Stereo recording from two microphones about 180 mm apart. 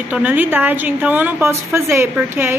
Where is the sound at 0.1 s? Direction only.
10° right (ahead or behind).